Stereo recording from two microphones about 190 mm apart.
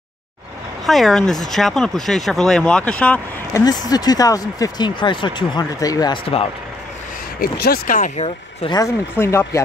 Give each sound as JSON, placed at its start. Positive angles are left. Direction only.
{"t": 0.8, "sound": "speech", "side_deg": 0}
{"t": 3.6, "sound": "speech", "side_deg": 20}
{"t": 7.3, "sound": "speech", "side_deg": 55}
{"t": 8.6, "sound": "speech", "side_deg": 20}